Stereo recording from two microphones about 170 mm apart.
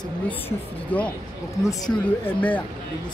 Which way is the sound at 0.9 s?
10° left (ahead or behind).